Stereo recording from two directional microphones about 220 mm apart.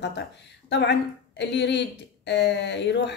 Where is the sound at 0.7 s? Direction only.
50° left (ahead or behind).